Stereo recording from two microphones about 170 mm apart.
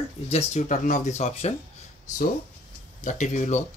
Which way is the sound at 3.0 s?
45° left (ahead or behind).